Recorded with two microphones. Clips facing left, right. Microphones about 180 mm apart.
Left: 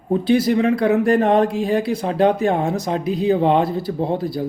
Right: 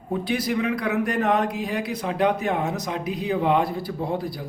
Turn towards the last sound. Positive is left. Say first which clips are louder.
# left 6 dB
turn(degrees=25)  # may be behind; listen again after turning